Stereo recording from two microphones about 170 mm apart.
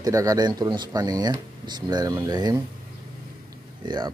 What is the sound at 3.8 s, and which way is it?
Speech, 25° right (ahead or behind).